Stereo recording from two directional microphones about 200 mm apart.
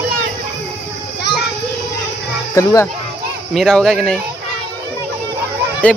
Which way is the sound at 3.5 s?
Centre (ahead or behind).